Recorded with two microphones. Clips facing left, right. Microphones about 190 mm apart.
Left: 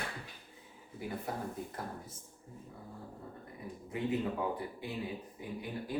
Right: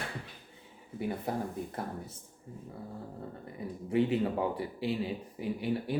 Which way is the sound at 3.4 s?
75° right (ahead or behind).